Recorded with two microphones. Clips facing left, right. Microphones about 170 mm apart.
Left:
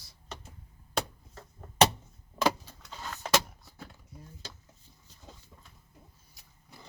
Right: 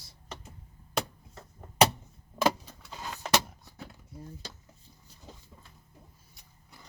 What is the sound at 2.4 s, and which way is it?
Vehicle, 10° right (ahead or behind).